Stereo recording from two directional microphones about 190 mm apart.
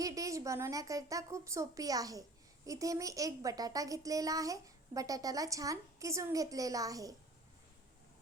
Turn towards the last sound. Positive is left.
turn(degrees=-20)  # may be behind; listen again after turning